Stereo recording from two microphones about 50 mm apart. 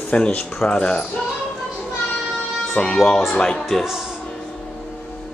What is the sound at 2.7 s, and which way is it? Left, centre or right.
Speech, centre.